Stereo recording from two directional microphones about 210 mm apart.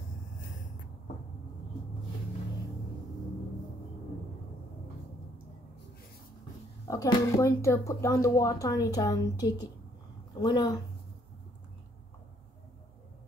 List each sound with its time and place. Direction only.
6.9 s speech: 15° left (ahead or behind)